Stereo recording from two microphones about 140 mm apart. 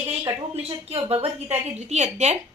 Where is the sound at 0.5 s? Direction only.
45° right (ahead or behind).